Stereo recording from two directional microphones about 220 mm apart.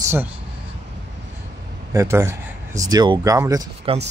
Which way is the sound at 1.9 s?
15° right (ahead or behind).